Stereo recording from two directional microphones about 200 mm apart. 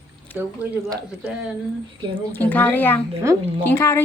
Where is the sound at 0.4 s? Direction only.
10° right (ahead or behind).